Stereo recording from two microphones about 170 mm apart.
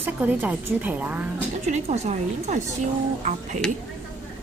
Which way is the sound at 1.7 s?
40° right (ahead or behind).